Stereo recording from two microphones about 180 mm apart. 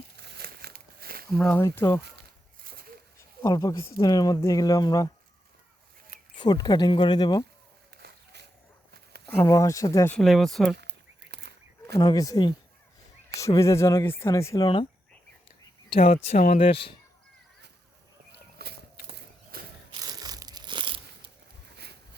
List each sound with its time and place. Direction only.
0.2 s crumpling: 65° right (ahead or behind)
1.3 s speech: 5° left (ahead or behind)
3.4 s speech: 20° left (ahead or behind)
6.3 s speech: 25° left (ahead or behind)
7.9 s a sound: 65° right (ahead or behind)
9.3 s speech: 15° left (ahead or behind)
10.2 s speech: centre (ahead or behind)
10.8 s a sound: 70° right (ahead or behind)
11.9 s speech: 20° left (ahead or behind)
16.0 s speech: 35° left (ahead or behind)
18.6 s a sound: 60° right (ahead or behind)
19.9 s crunch: 20° right (ahead or behind)